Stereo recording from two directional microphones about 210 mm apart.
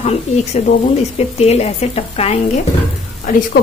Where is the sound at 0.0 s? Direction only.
30° left (ahead or behind).